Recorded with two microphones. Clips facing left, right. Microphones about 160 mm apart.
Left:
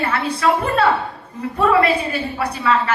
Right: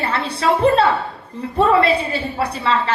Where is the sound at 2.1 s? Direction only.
30° right (ahead or behind).